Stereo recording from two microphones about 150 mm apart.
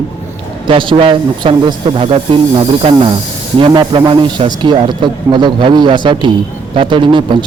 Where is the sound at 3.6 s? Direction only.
30° right (ahead or behind).